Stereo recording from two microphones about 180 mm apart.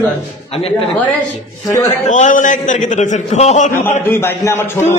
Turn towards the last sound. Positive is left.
turn(degrees=15)  # may be behind; listen again after turning